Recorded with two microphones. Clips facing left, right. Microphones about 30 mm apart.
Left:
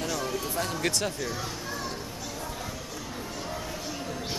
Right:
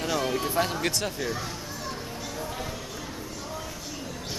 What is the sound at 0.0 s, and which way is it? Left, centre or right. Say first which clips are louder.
Music: right 4 dB; right.